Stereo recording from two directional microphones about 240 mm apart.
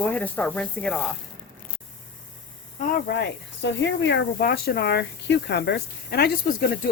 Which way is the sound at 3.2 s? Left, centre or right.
Left.